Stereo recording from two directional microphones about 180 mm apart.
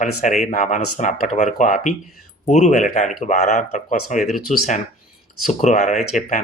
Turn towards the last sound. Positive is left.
turn(degrees=40)  # may be behind; listen again after turning